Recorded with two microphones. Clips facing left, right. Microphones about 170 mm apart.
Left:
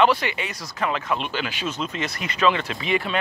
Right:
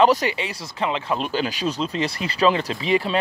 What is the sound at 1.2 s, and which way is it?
Speech, 40° right (ahead or behind).